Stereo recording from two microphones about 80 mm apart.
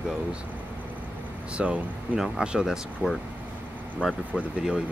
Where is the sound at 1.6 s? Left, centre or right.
Centre.